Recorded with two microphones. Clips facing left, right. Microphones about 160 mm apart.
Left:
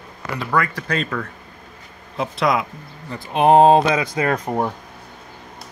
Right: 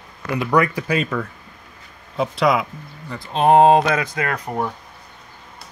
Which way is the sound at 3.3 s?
15° left (ahead or behind).